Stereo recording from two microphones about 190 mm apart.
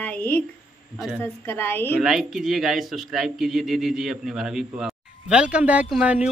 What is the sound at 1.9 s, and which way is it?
Speech, centre (ahead or behind).